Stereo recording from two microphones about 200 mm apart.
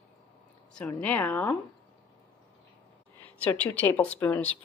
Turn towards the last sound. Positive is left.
turn(degrees=5)  # may be behind; listen again after turning